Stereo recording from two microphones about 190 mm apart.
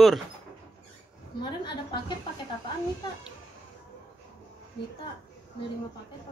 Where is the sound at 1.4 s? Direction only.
25° left (ahead or behind).